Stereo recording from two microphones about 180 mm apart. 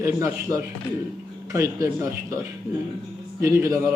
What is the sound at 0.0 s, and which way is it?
A man's voice, 15° right (ahead or behind).